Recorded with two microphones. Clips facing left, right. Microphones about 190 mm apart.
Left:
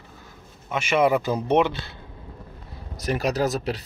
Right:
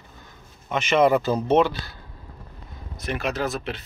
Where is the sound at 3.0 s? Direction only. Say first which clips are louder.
Left 3 dB; 40° left (ahead or behind).